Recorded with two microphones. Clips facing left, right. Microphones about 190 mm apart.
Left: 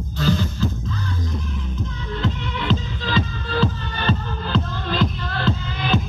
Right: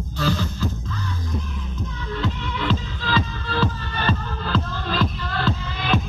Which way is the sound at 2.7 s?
25° left (ahead or behind).